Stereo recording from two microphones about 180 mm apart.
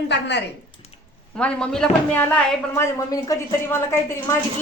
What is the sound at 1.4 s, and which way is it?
Speech, 5° left (ahead or behind).